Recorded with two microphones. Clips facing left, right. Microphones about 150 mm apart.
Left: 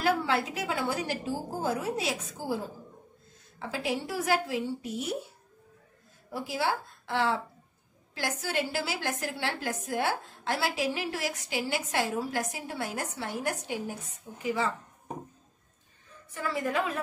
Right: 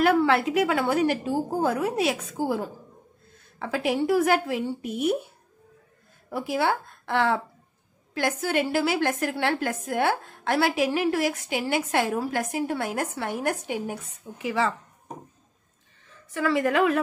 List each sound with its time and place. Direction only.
0.0 s a woman's voice: 65° right (ahead or behind)
6.3 s a woman's voice: 55° right (ahead or behind)
14.4 s speech: 90° right
16.3 s a woman's voice: 90° right